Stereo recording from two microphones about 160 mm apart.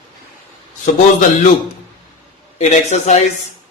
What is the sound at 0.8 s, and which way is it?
Speech, 55° left (ahead or behind).